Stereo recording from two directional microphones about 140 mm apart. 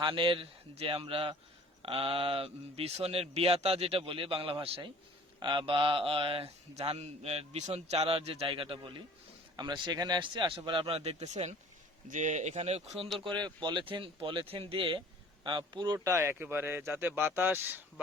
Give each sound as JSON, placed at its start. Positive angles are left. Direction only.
{"t": 0.0, "sound": "speech", "side_deg": -35}
{"t": 13.1, "sound": "speech", "side_deg": -35}